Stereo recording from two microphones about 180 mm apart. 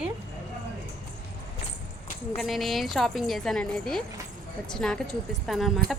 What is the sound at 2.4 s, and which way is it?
A woman's voice, centre (ahead or behind).